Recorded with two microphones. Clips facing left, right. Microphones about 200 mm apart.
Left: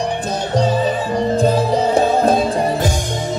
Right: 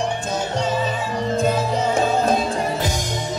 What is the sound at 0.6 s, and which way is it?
Music, 35° left (ahead or behind).